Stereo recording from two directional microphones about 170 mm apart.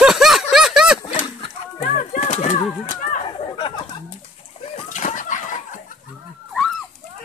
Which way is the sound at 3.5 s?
30° left (ahead or behind).